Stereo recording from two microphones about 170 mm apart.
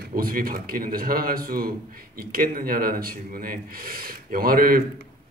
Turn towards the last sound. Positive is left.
turn(degrees=-60)  # may be behind; listen again after turning